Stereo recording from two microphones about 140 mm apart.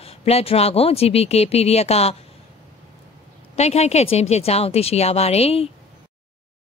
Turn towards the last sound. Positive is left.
turn(degrees=45)  # may be behind; listen again after turning